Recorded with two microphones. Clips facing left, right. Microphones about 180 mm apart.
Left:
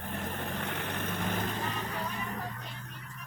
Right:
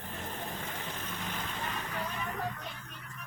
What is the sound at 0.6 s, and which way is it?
Vehicle, 65° left (ahead or behind).